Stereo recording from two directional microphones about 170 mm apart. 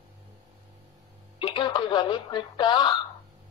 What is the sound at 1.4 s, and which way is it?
Speech, 25° left (ahead or behind).